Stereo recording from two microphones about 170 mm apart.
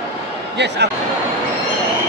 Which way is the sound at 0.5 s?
90° right.